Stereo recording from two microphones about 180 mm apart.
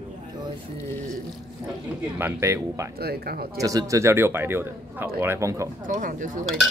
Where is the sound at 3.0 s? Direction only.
60° right (ahead or behind).